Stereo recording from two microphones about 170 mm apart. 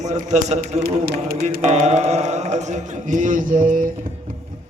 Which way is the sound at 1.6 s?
40° right (ahead or behind).